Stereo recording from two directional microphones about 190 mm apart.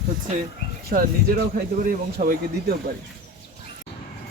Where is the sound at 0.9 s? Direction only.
45° right (ahead or behind).